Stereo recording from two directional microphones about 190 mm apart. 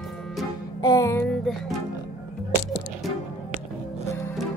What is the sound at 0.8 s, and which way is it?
Music, 20° left (ahead or behind).